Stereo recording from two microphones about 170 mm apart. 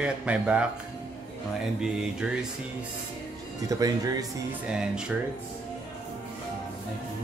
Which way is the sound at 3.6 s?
20° right (ahead or behind).